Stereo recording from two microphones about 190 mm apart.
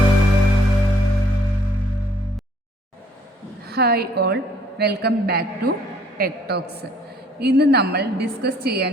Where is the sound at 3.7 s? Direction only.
55° right (ahead or behind).